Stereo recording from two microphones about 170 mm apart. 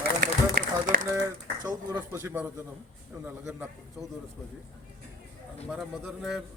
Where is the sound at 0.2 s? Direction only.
55° right (ahead or behind).